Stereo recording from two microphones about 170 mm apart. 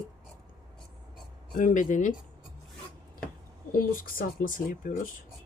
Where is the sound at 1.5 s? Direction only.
50° left (ahead or behind).